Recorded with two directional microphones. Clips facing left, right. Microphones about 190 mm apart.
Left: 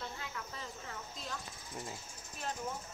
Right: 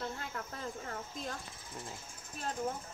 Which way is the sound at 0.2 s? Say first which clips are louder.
Right 3 dB; 50° right (ahead or behind).